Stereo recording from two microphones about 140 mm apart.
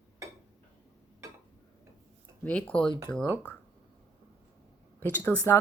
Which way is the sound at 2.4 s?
10° left (ahead or behind).